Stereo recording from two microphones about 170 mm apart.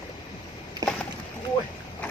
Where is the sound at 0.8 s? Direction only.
20° right (ahead or behind).